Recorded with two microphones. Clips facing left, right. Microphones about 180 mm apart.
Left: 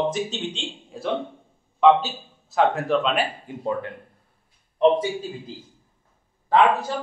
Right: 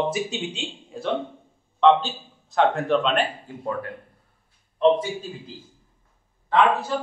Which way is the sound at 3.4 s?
20° left (ahead or behind).